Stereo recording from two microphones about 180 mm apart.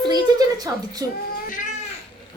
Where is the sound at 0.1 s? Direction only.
20° right (ahead or behind).